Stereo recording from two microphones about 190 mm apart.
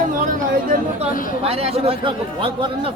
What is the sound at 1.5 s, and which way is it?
Speech, 30° right (ahead or behind).